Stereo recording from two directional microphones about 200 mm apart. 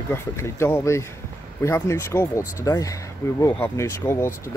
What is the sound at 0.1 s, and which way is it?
Speech, 10° left (ahead or behind).